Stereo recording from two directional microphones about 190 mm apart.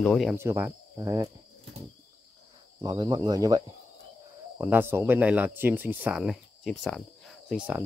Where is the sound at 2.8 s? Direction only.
20° right (ahead or behind).